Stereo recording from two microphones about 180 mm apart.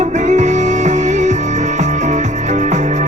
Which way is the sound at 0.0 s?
40° right (ahead or behind).